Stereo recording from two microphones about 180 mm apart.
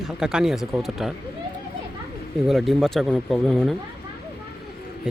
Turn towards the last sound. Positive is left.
turn(degrees=0)  # may be behind; listen again after turning